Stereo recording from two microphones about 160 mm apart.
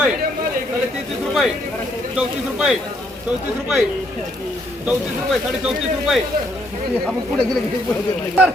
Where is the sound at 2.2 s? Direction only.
5° right (ahead or behind).